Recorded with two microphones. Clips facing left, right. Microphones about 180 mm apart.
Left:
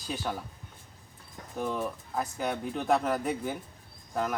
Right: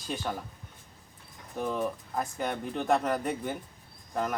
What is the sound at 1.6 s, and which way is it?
Speech, centre (ahead or behind).